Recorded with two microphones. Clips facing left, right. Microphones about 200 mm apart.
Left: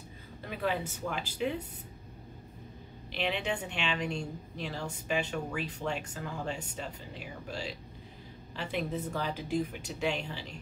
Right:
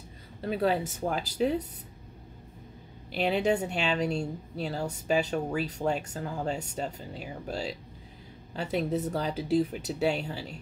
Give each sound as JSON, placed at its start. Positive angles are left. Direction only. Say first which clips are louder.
{"t": 0.4, "sound": "speech", "louder": "right 6 dB", "side_deg": -35}
{"t": 3.1, "sound": "speech", "louder": "right 7 dB", "side_deg": -40}